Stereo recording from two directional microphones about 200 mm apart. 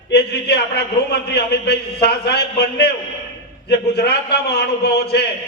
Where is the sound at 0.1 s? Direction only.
55° left (ahead or behind).